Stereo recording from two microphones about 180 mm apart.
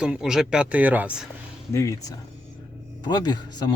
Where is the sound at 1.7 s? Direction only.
15° left (ahead or behind).